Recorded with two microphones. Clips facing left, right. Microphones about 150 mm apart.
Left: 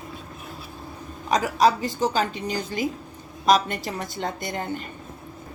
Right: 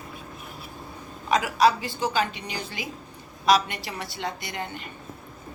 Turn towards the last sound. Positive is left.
turn(degrees=45)  # may be behind; listen again after turning